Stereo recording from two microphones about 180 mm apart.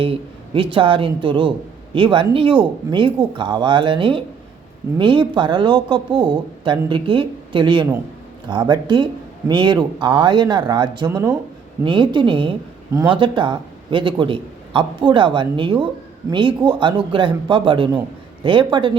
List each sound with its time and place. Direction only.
0.0 s speech: 30° right (ahead or behind)